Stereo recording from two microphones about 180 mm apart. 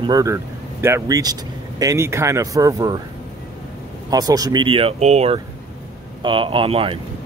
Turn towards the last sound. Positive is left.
turn(degrees=-30)  # may be behind; listen again after turning